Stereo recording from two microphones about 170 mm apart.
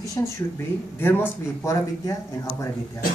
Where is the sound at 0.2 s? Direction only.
20° left (ahead or behind).